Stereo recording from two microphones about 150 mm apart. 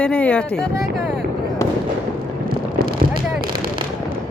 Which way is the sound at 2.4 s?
80° right.